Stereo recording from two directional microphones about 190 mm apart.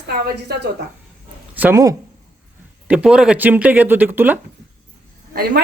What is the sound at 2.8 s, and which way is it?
Speech, 5° right (ahead or behind).